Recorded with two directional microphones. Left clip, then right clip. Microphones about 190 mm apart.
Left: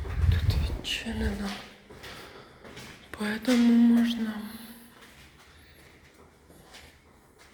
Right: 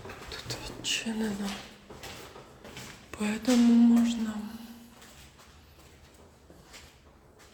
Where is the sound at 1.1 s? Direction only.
25° right (ahead or behind).